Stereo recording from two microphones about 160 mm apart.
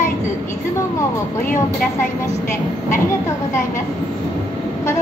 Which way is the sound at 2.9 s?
15° left (ahead or behind).